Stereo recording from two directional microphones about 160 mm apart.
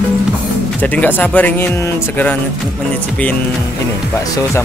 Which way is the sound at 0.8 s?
10° left (ahead or behind).